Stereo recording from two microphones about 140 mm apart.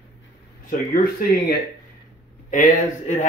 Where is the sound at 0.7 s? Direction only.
75° left (ahead or behind).